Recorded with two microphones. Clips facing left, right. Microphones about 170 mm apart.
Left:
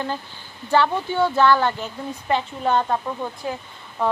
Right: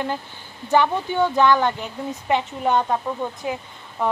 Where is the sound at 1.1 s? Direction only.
15° right (ahead or behind).